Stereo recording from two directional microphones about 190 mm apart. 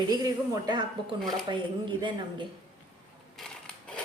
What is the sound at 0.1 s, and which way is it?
Speech, 20° right (ahead or behind).